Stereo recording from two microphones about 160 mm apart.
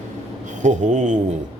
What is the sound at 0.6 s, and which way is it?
Speech, 50° right (ahead or behind).